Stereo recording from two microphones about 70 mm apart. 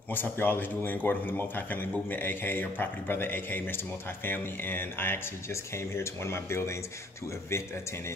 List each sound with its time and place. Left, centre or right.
0.1 s a man's voice: left